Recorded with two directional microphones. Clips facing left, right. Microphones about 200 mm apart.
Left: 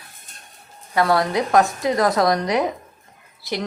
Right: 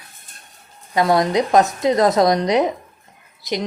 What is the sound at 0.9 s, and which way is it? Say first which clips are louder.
A woman's voice: right 2 dB; 20° right (ahead or behind).